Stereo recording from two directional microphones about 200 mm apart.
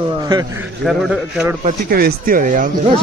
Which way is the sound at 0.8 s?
5° right (ahead or behind).